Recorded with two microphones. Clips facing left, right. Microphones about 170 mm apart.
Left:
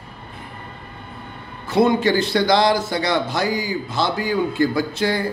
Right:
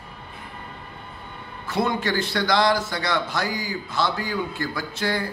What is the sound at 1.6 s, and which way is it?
A man's voice, 25° left (ahead or behind).